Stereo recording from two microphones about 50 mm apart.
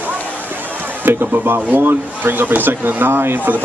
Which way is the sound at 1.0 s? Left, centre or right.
Right.